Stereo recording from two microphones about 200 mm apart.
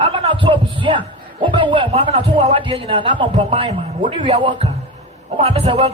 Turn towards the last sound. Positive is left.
turn(degrees=-25)  # may be behind; listen again after turning